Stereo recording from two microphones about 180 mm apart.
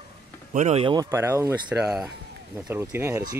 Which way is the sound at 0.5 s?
35° right (ahead or behind).